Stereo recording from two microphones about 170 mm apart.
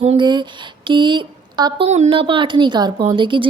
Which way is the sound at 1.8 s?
45° right (ahead or behind).